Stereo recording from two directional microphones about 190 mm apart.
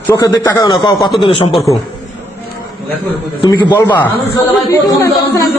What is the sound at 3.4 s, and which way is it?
A man's voice, 25° left (ahead or behind).